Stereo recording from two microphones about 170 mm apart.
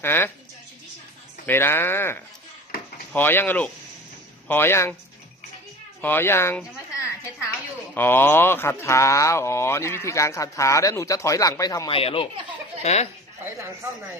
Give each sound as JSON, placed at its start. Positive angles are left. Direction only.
{"t": 0.0, "sound": "speech", "side_deg": 15}
{"t": 1.5, "sound": "speech", "side_deg": 15}
{"t": 6.0, "sound": "speech", "side_deg": 10}
{"t": 7.0, "sound": "a sound", "side_deg": 15}
{"t": 7.9, "sound": "speech", "side_deg": 10}
{"t": 11.9, "sound": "speech", "side_deg": 35}